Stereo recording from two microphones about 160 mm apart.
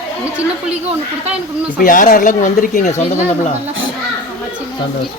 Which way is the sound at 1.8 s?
55° left (ahead or behind).